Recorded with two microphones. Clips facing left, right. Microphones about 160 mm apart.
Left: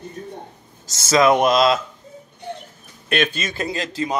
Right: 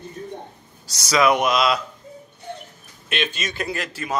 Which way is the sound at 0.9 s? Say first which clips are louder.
Left 3 dB; 25° left (ahead or behind).